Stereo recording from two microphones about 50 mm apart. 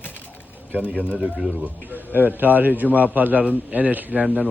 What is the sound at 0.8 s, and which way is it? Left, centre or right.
Speech, right.